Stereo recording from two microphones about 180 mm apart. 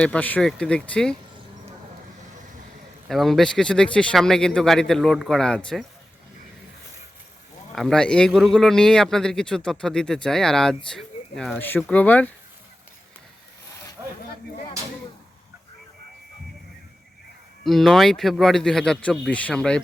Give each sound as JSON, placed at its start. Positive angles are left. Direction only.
{"t": 0.0, "sound": "a man's voice", "side_deg": 10}
{"t": 3.1, "sound": "a man's voice", "side_deg": 0}
{"t": 7.8, "sound": "a man's voice", "side_deg": 5}
{"t": 14.0, "sound": "a sound", "side_deg": -15}
{"t": 17.6, "sound": "a man's voice", "side_deg": 0}